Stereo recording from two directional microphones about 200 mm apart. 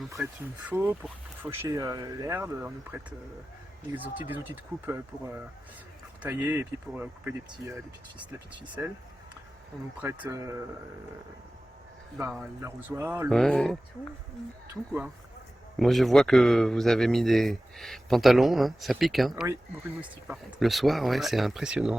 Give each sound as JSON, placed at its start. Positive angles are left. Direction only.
{"t": 0.2, "sound": "speech", "side_deg": 0}
{"t": 8.8, "sound": "speech", "side_deg": -10}
{"t": 10.0, "sound": "speech", "side_deg": -10}
{"t": 12.1, "sound": "speech", "side_deg": -5}
{"t": 13.3, "sound": "speech", "side_deg": 5}
{"t": 15.8, "sound": "speech", "side_deg": 0}